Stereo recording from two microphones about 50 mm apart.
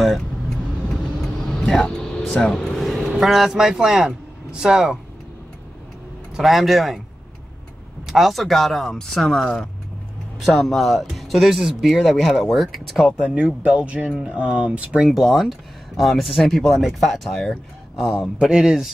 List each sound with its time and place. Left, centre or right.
1.2 s vehicle: centre
2.6 s speech: centre
6.3 s speech: centre
8.1 s speech: centre
13.2 s speech: centre
15.0 s speech: centre
18.4 s speech: centre